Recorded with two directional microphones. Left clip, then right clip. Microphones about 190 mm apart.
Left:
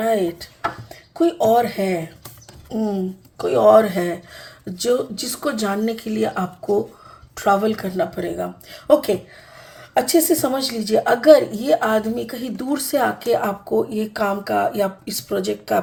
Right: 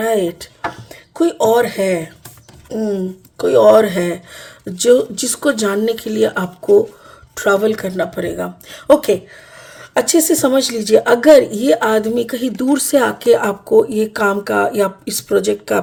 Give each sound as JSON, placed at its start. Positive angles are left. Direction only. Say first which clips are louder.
{"t": 0.0, "sound": "a woman's voice", "louder": "right 3 dB", "side_deg": -45}